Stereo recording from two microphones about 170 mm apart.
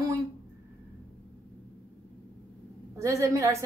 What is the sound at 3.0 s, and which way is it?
Speech, 20° right (ahead or behind).